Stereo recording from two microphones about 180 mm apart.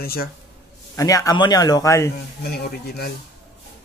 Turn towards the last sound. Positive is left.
turn(degrees=60)  # may be behind; listen again after turning